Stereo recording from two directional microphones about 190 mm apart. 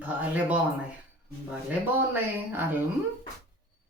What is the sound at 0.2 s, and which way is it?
Speech, 10° right (ahead or behind).